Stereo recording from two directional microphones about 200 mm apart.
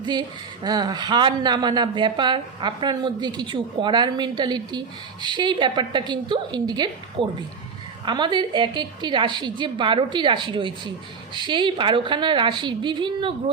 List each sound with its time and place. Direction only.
0.0 s speech: 20° right (ahead or behind)